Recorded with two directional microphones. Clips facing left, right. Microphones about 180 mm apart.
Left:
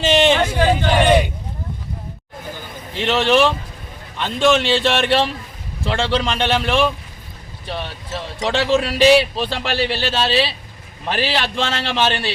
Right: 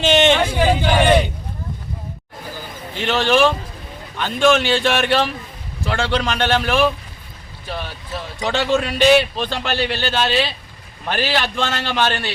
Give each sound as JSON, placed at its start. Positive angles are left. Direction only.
{"t": 0.0, "sound": "a sound", "side_deg": 0}
{"t": 2.9, "sound": "a man's voice", "side_deg": 0}
{"t": 12.0, "sound": "speech", "side_deg": 25}